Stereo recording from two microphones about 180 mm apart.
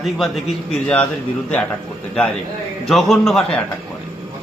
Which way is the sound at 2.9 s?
Centre (ahead or behind).